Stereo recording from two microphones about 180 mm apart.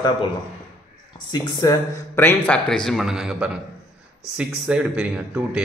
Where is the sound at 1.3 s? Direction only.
25° left (ahead or behind).